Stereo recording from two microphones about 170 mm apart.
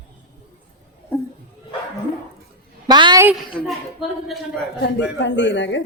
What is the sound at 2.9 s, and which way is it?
Speech, 25° right (ahead or behind).